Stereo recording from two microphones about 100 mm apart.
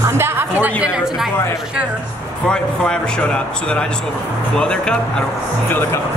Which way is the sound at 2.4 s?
10° left (ahead or behind).